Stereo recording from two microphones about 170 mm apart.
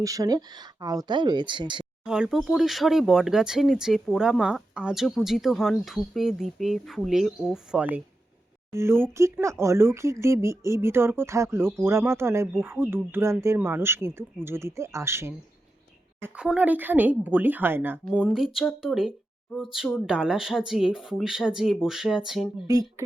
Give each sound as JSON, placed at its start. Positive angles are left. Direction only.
{"t": 0.0, "sound": "speech", "side_deg": -20}
{"t": 2.0, "sound": "speech", "side_deg": -5}
{"t": 8.7, "sound": "speech", "side_deg": -15}
{"t": 22.6, "sound": "speech", "side_deg": -20}